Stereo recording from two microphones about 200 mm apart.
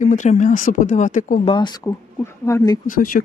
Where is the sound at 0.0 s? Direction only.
40° left (ahead or behind).